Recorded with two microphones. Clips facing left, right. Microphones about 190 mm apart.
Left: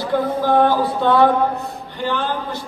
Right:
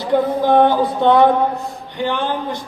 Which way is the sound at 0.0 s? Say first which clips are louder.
Right 3 dB; 20° right (ahead or behind).